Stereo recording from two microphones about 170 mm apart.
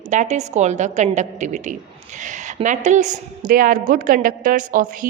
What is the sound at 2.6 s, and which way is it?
A woman's voice, 45° right (ahead or behind).